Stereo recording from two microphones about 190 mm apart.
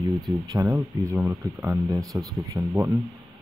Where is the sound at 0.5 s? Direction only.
15° right (ahead or behind).